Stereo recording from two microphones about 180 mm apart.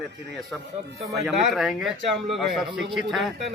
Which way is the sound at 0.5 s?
Centre (ahead or behind).